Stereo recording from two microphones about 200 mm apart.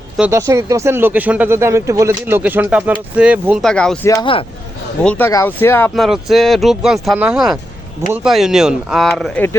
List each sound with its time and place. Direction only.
0.2 s speech: 15° right (ahead or behind)
3.6 s speech: 5° left (ahead or behind)
4.1 s speech: 25° left (ahead or behind)
5.0 s speech: 10° left (ahead or behind)
5.9 s speech: centre (ahead or behind)